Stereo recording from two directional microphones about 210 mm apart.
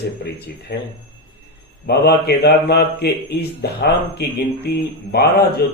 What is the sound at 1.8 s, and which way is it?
A man's voice, 50° left (ahead or behind).